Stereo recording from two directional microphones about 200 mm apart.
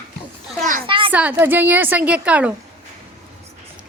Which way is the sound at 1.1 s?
10° right (ahead or behind).